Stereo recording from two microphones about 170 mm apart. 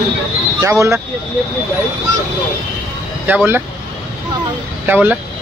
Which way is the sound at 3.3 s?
10° right (ahead or behind).